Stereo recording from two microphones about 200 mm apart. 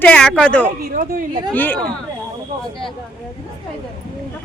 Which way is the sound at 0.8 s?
45° right (ahead or behind).